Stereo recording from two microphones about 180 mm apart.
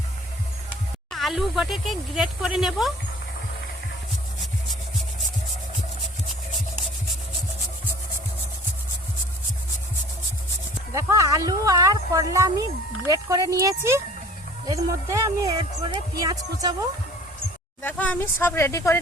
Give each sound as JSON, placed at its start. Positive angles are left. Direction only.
{"t": 1.1, "sound": "speech", "side_deg": 0}
{"t": 10.9, "sound": "speech", "side_deg": -15}
{"t": 17.8, "sound": "speech", "side_deg": 10}